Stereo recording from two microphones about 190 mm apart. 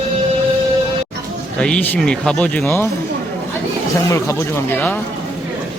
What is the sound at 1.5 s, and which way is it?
Speech, 5° left (ahead or behind).